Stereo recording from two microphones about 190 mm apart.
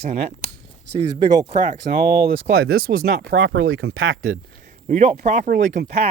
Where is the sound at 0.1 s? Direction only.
35° right (ahead or behind).